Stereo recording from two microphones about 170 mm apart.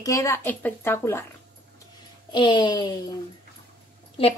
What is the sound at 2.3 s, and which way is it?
Speech, 25° left (ahead or behind).